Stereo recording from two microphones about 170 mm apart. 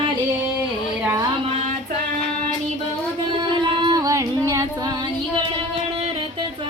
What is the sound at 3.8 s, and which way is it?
Female singing, 25° right (ahead or behind).